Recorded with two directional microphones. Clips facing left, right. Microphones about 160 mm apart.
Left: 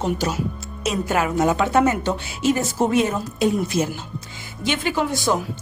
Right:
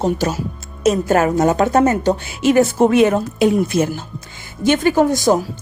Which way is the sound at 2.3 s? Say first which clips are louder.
Right 8 dB; 70° right (ahead or behind).